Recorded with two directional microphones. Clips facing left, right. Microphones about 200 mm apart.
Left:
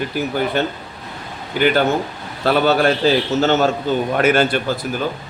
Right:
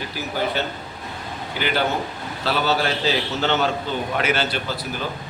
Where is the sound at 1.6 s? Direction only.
50° left (ahead or behind).